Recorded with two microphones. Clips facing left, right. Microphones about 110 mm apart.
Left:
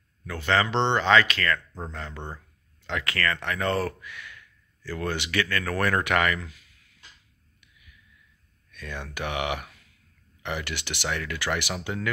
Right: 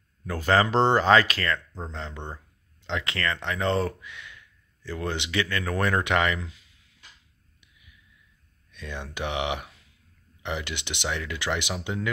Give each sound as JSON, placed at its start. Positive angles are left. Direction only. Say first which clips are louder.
{"t": 0.2, "sound": "speech", "louder": "right 2 dB", "side_deg": -40}
{"t": 1.9, "sound": "speech", "louder": "right 1 dB", "side_deg": -25}
{"t": 8.7, "sound": "speech", "louder": "even", "side_deg": -20}